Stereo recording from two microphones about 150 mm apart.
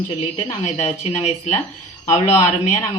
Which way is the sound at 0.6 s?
50° left (ahead or behind).